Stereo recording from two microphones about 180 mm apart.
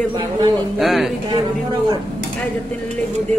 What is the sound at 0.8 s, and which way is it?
Speech, centre (ahead or behind).